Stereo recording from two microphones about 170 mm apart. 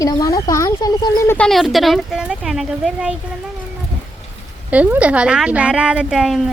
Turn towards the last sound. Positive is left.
turn(degrees=0)  # may be behind; listen again after turning